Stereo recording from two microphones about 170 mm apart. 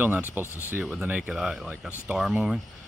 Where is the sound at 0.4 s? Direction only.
15° left (ahead or behind).